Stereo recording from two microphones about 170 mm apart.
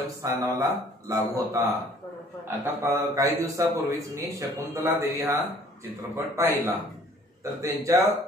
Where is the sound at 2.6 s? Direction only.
15° right (ahead or behind).